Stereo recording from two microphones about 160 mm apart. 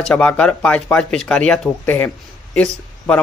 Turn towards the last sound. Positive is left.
turn(degrees=5)  # may be behind; listen again after turning